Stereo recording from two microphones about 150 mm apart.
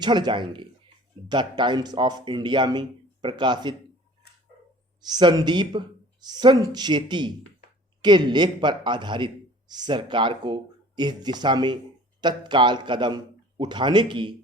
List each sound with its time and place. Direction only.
0.0 s a man's voice: 30° right (ahead or behind)
5.0 s a man's voice: 30° right (ahead or behind)